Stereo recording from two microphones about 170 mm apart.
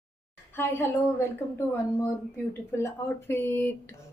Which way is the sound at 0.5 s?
15° left (ahead or behind).